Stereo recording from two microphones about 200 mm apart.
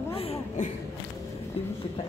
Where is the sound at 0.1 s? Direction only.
30° left (ahead or behind).